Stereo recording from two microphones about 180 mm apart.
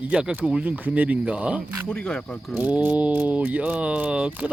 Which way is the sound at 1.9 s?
5° left (ahead or behind).